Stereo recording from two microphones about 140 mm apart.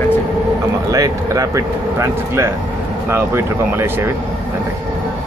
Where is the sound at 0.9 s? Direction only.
25° right (ahead or behind).